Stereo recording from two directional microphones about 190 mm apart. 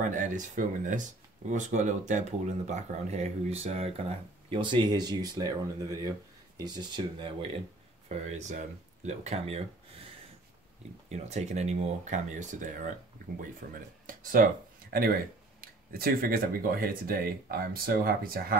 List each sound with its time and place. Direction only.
0.1 s speech: 40° right (ahead or behind); by 7.3 s 25° right (ahead or behind)
8.1 s speech: 35° right (ahead or behind)
11.1 s speech: 35° right (ahead or behind)
14.9 s speech: 50° right (ahead or behind)